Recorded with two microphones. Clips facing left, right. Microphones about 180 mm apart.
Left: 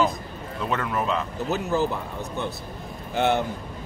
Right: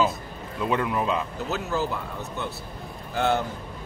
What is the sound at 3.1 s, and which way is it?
Speech, 20° left (ahead or behind).